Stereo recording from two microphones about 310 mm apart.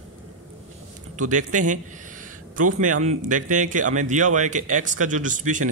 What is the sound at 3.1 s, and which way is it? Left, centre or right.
A man's voice, right.